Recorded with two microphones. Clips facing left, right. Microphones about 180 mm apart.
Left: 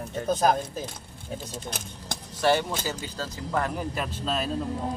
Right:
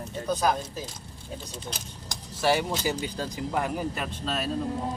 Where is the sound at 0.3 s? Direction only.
50° left (ahead or behind).